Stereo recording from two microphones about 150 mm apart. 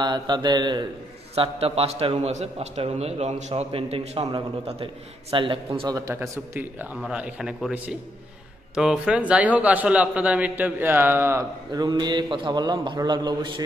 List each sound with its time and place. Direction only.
0.0 s a man's voice: 30° right (ahead or behind)
1.3 s a man's voice: 40° right (ahead or behind)
5.8 s a man's voice: 25° right (ahead or behind)
11.7 s a man's voice: 30° right (ahead or behind)